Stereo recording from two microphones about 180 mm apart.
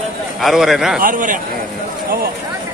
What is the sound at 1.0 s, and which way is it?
Speech, 50° right (ahead or behind).